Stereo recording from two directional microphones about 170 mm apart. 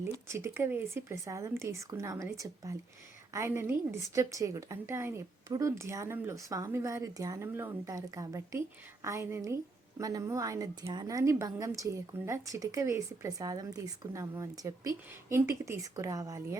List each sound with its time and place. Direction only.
0.0 s a woman's voice: 15° right (ahead or behind)